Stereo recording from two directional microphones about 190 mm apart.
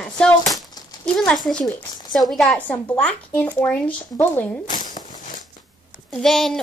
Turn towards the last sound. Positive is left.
turn(degrees=0)  # may be behind; listen again after turning